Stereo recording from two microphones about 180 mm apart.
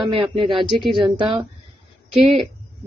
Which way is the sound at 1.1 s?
25° right (ahead or behind).